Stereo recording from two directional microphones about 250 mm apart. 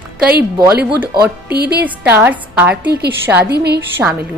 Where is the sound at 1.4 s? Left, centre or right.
Right.